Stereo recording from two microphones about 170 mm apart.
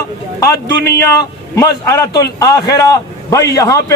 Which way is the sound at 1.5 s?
15° left (ahead or behind).